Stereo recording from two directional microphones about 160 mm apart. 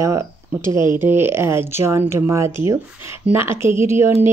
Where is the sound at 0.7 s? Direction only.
30° left (ahead or behind).